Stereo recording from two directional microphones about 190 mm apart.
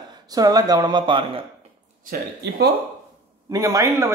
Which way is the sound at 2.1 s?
60° right (ahead or behind).